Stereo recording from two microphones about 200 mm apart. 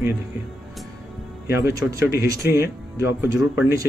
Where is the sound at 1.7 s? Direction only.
15° right (ahead or behind).